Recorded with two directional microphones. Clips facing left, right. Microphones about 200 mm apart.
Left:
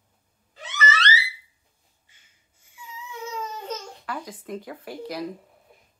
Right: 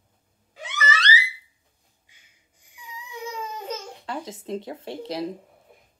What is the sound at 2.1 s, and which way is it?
Baby cry, 15° right (ahead or behind).